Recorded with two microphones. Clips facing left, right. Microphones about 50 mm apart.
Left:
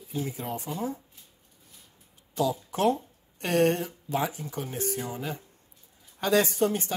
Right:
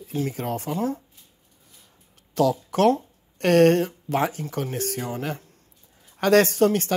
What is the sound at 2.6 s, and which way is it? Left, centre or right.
Speech, right.